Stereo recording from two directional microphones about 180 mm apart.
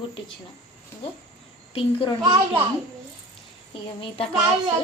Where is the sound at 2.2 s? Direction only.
30° right (ahead or behind).